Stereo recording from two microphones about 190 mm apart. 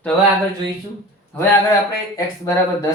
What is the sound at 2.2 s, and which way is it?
Speech, 15° left (ahead or behind).